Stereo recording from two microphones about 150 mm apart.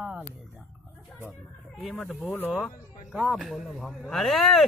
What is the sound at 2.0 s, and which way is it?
Speech, centre (ahead or behind).